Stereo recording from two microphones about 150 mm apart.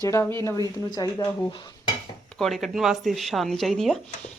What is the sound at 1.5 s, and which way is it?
Dishes, 35° left (ahead or behind).